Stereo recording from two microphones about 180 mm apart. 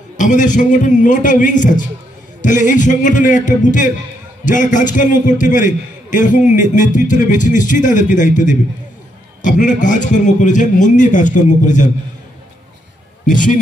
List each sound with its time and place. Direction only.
0.2 s a man's voice: 45° left (ahead or behind)
13.3 s a man's voice: 45° left (ahead or behind)